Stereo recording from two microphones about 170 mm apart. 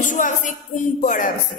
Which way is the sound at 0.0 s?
50° left (ahead or behind).